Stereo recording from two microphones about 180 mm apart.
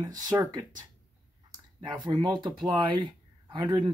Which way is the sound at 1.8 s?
25° right (ahead or behind).